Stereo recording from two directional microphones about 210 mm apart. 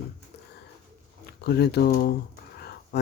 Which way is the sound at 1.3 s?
50° left (ahead or behind).